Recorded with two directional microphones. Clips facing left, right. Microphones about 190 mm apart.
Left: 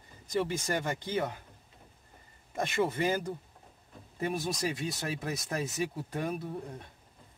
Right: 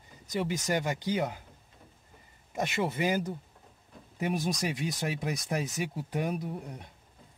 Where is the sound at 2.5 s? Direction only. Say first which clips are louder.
Left 1 dB; 10° right (ahead or behind).